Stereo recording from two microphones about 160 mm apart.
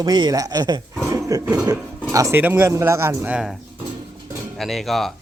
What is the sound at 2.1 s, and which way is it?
Speech, 15° right (ahead or behind).